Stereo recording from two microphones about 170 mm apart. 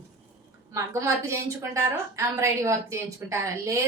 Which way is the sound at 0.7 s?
15° right (ahead or behind).